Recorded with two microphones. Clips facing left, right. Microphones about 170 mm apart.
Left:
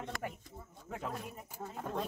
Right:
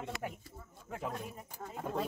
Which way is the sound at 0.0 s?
5° right (ahead or behind).